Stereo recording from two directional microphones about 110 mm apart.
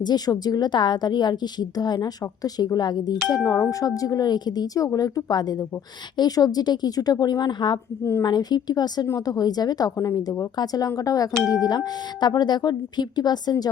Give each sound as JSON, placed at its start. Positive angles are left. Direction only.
{"t": 0.0, "sound": "a woman's voice", "side_deg": 40}